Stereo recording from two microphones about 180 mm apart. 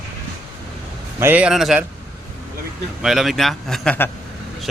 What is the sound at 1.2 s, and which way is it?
Speech, 10° right (ahead or behind).